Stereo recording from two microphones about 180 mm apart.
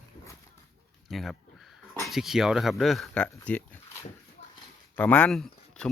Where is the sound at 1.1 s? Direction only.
Centre (ahead or behind).